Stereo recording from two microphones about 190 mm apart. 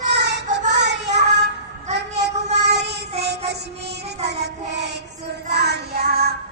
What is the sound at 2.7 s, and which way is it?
Child singing, 60° right (ahead or behind).